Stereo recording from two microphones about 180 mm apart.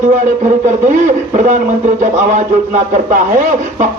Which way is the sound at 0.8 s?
45° right (ahead or behind).